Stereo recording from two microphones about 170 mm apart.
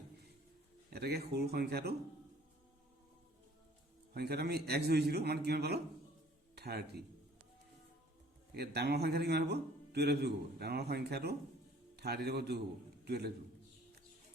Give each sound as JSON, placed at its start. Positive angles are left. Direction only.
{"t": 0.9, "sound": "a man's voice", "side_deg": -70}
{"t": 4.1, "sound": "a man's voice", "side_deg": -70}
{"t": 8.5, "sound": "a man's voice", "side_deg": -70}